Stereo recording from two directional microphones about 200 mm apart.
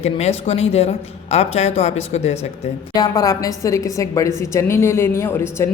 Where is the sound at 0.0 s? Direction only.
30° left (ahead or behind).